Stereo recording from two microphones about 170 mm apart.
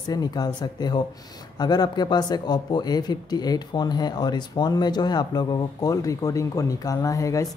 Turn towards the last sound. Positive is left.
turn(degrees=20)  # may be behind; listen again after turning